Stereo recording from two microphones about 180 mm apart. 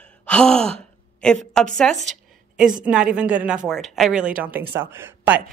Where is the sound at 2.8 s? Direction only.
5° right (ahead or behind).